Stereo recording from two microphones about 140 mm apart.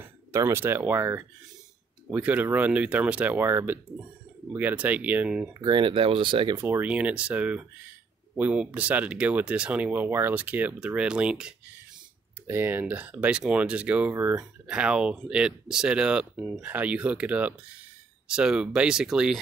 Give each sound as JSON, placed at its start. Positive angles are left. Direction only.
{"t": 0.0, "sound": "speech", "side_deg": -20}
{"t": 5.5, "sound": "speech", "side_deg": -30}
{"t": 6.5, "sound": "speech", "side_deg": -20}